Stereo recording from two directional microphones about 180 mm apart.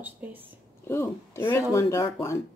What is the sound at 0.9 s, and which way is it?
Speech, 15° left (ahead or behind).